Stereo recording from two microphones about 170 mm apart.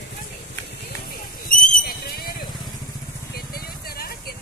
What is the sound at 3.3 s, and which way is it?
Vehicle, 65° left (ahead or behind).